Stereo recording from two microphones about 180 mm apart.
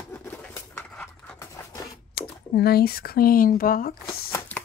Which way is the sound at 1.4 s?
15° left (ahead or behind).